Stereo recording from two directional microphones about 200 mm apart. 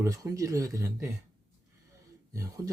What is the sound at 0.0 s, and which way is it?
Speech, 15° right (ahead or behind).